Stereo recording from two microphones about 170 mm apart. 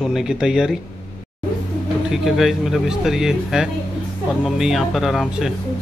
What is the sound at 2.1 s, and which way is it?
A man's voice, centre (ahead or behind).